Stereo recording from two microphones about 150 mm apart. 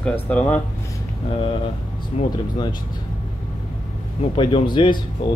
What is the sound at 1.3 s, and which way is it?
Speech, 35° left (ahead or behind).